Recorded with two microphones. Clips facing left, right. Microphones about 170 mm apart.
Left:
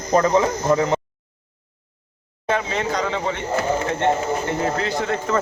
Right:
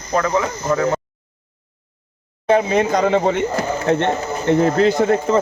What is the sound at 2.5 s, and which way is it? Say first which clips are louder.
Speech: right 7 dB; 45° right (ahead or behind).